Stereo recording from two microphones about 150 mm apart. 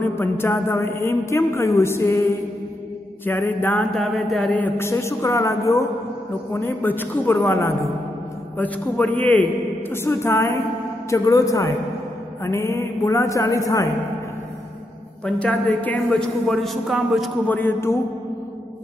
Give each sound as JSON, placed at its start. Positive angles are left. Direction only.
{"t": 0.0, "sound": "a man's voice", "side_deg": 15}
{"t": 3.9, "sound": "a man's voice", "side_deg": 0}
{"t": 15.2, "sound": "a man's voice", "side_deg": 10}
{"t": 17.5, "sound": "a man's voice", "side_deg": 10}